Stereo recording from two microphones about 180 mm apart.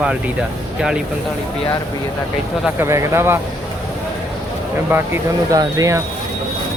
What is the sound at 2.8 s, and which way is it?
Speech, 15° right (ahead or behind).